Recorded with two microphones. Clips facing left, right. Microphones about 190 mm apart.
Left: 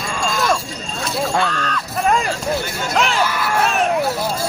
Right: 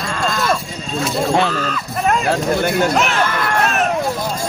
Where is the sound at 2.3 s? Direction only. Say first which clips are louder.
Right 5 dB; 60° right (ahead or behind).